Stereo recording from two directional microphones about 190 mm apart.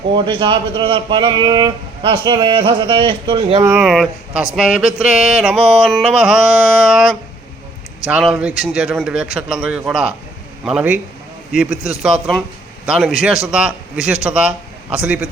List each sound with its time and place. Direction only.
0.3 s a man's voice: 25° right (ahead or behind)
3.6 s mantra: 5° right (ahead or behind)
10.7 s a man's voice: 5° right (ahead or behind)
11.5 s mantra: 5° right (ahead or behind)
11.8 s speech: 20° left (ahead or behind)
12.0 s mantra: centre (ahead or behind)
14.3 s speech: 5° right (ahead or behind)